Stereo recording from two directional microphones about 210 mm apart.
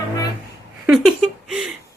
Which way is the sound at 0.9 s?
Centre (ahead or behind).